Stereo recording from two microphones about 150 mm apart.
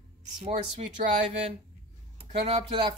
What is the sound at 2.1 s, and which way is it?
Speech, 45° right (ahead or behind).